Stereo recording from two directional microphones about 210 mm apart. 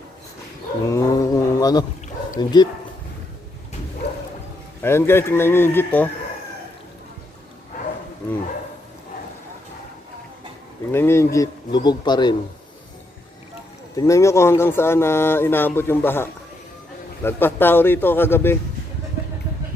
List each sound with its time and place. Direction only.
0.9 s a sound: 15° left (ahead or behind)
2.4 s speech: 20° left (ahead or behind)
4.8 s speech: 10° left (ahead or behind)
10.9 s speech: 10° left (ahead or behind)
13.9 s speech: 15° left (ahead or behind)